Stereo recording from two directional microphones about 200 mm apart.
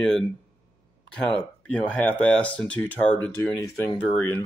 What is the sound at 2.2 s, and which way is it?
Speech, 5° left (ahead or behind).